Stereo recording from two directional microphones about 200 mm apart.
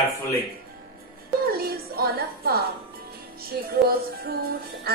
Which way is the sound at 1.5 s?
50° right (ahead or behind).